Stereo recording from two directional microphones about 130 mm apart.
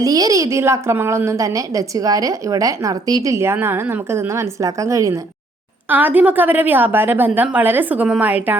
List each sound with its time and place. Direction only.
0.0 s a woman's voice: 30° right (ahead or behind)
5.9 s a woman's voice: 15° right (ahead or behind)